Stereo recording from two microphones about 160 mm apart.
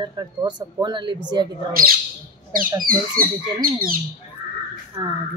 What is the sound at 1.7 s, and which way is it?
Speech, 65° right (ahead or behind).